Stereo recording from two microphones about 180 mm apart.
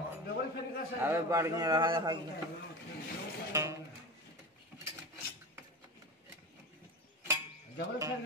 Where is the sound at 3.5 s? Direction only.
15° right (ahead or behind).